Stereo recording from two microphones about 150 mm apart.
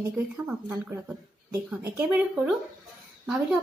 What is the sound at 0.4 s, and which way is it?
Speech, 10° right (ahead or behind).